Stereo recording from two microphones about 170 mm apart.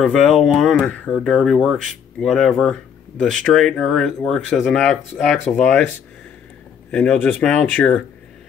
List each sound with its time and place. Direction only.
0.0 s speech: centre (ahead or behind)
6.9 s speech: 5° left (ahead or behind)